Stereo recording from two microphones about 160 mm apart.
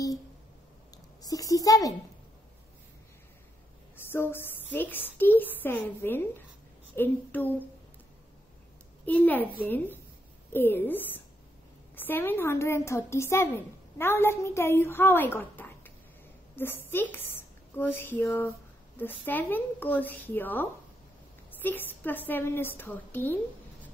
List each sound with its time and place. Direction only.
1.2 s a sound: 20° left (ahead or behind)
4.1 s a woman's voice: 15° left (ahead or behind)
9.0 s a woman's voice: 10° left (ahead or behind)